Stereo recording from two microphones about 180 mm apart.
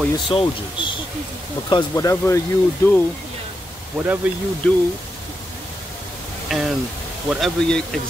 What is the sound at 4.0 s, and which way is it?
Speech, 10° right (ahead or behind).